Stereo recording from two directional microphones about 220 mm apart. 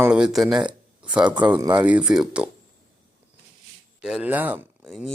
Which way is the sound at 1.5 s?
15° right (ahead or behind).